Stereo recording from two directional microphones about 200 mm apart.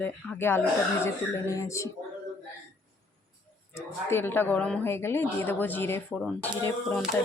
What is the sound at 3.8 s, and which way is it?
A woman's voice, 10° left (ahead or behind).